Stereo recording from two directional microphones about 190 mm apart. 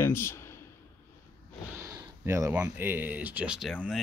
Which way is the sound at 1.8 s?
10° right (ahead or behind).